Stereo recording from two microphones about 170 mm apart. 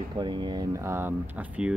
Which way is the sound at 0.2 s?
25° right (ahead or behind).